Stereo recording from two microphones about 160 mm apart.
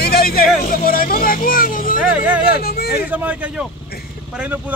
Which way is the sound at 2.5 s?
70° left (ahead or behind).